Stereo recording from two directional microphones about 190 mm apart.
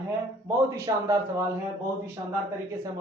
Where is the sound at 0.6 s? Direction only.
15° right (ahead or behind).